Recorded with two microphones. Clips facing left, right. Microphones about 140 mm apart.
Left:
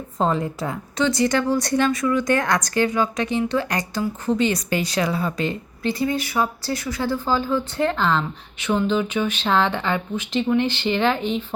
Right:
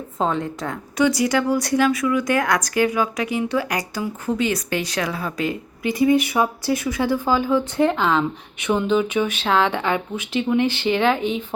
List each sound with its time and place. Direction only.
0.2 s speech: centre (ahead or behind)
0.9 s speech: 10° right (ahead or behind)
5.9 s speech: 15° right (ahead or behind)